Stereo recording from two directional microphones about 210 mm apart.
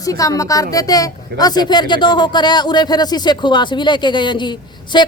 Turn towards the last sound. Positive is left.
turn(degrees=20)  # may be behind; listen again after turning